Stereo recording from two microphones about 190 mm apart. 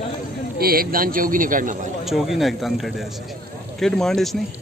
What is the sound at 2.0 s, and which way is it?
A man's voice, centre (ahead or behind).